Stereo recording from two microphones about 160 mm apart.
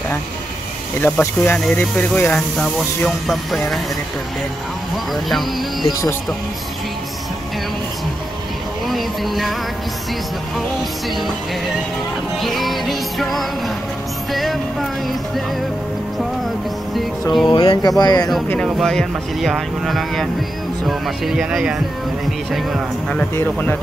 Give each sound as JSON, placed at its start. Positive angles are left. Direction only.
{"t": 1.0, "sound": "speech", "side_deg": 15}
{"t": 4.9, "sound": "speech", "side_deg": 0}
{"t": 8.8, "sound": "speech", "side_deg": 0}
{"t": 10.8, "sound": "speech", "side_deg": 0}
{"t": 12.4, "sound": "speech", "side_deg": 0}
{"t": 16.9, "sound": "music", "side_deg": 0}
{"t": 17.5, "sound": "speech", "side_deg": 25}
{"t": 18.7, "sound": "speech", "side_deg": 0}
{"t": 23.3, "sound": "speech", "side_deg": 10}